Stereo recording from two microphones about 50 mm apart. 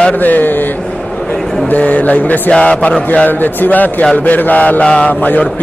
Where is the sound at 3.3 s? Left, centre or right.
Left.